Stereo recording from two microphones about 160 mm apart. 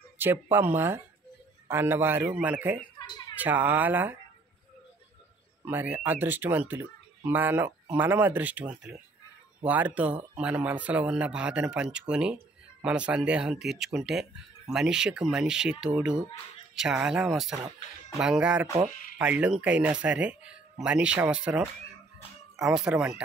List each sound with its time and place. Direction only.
0.2 s speech: 15° right (ahead or behind)
3.0 s a sound: 25° left (ahead or behind)
3.3 s speech: 10° right (ahead or behind)
5.7 s speech: 10° right (ahead or behind)
22.8 s speech: 5° right (ahead or behind)